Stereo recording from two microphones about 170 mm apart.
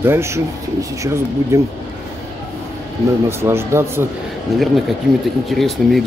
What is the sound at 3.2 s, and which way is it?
Speech, 15° right (ahead or behind).